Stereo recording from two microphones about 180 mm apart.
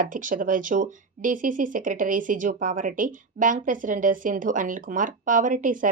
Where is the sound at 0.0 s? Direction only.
50° right (ahead or behind).